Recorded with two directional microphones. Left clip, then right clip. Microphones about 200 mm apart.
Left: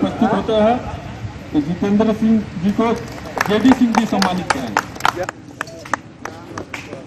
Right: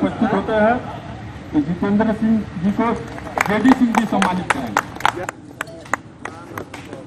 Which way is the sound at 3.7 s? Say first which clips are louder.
Left 1 dB; 40° left (ahead or behind).